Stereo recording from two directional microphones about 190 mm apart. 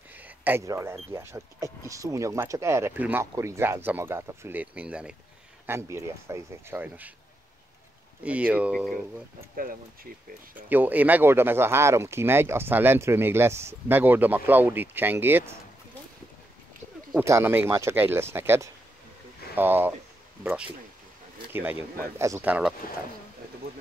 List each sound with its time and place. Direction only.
0.1 s a sound: 10° right (ahead or behind)
1.1 s speech: 15° right (ahead or behind)
8.2 s speech: 5° right (ahead or behind)
9.6 s speech: 50° right (ahead or behind)
10.7 s speech: 10° right (ahead or behind)
17.2 s speech: 15° right (ahead or behind)